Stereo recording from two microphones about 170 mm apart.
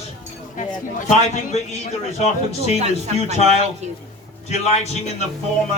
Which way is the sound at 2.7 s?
40° right (ahead or behind).